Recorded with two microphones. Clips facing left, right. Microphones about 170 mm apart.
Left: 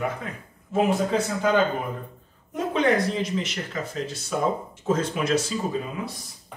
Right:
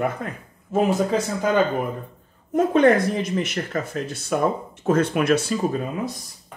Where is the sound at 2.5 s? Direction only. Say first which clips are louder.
Right 6 dB; 50° right (ahead or behind).